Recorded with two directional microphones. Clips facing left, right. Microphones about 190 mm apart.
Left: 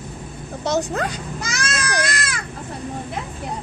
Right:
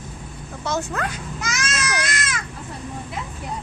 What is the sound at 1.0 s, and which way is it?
Baby cry, 35° left (ahead or behind).